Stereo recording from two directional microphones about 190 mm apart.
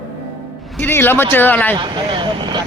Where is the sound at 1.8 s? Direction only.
25° right (ahead or behind).